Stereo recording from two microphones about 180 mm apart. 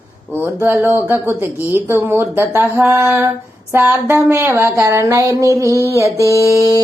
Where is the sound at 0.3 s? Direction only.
15° right (ahead or behind).